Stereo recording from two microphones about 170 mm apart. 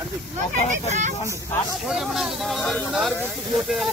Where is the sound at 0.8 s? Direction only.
45° right (ahead or behind).